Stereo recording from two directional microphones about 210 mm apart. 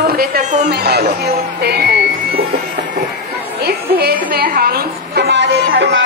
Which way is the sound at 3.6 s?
50° right (ahead or behind).